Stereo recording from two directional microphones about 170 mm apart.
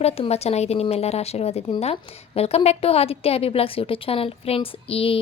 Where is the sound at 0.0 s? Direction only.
35° left (ahead or behind).